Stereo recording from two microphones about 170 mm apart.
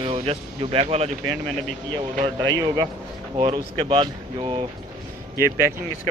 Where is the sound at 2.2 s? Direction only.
25° right (ahead or behind).